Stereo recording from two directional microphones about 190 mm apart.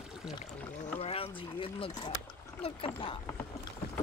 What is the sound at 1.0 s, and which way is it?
Speech, 30° left (ahead or behind).